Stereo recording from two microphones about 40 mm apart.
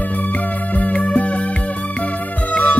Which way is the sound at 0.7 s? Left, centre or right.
Left.